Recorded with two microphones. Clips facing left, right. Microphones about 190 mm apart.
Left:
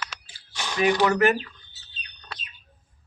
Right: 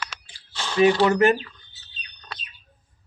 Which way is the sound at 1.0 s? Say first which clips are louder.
Right 2 dB; 25° right (ahead or behind).